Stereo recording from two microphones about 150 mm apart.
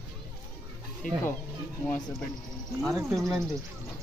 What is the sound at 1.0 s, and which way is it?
Speech, 65° left (ahead or behind).